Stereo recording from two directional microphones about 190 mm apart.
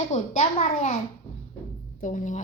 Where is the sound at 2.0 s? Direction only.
40° left (ahead or behind).